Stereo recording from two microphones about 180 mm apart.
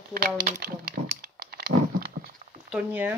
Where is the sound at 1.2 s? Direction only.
60° right (ahead or behind).